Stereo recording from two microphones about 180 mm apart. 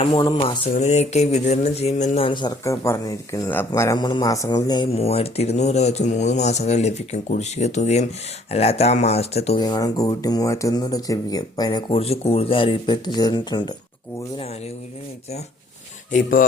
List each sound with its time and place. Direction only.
0.0 s speech: 25° left (ahead or behind)
0.7 s speech: 40° left (ahead or behind); by 4.9 s 25° left (ahead or behind)
4.9 s speech: 35° left (ahead or behind)
9.6 s speech: 25° left (ahead or behind)
16.1 s speech: 50° left (ahead or behind)